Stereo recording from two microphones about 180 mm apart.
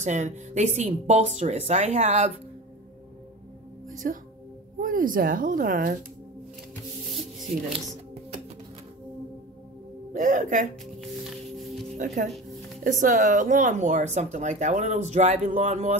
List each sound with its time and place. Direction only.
0.0 s speech: 40° right (ahead or behind)
4.0 s speech: 55° right (ahead or behind)
7.5 s speech: 50° right (ahead or behind)
10.1 s speech: 45° right (ahead or behind)
12.0 s speech: 45° right (ahead or behind)